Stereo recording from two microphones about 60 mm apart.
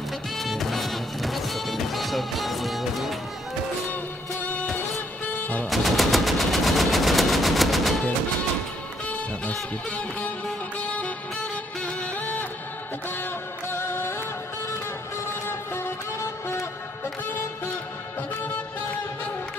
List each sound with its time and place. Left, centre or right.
0.4 s music: centre
4.4 s music: left
5.3 s vehicle: left
5.7 s machine gun: centre
9.0 s music: left
13.2 s music: left
15.4 s music: left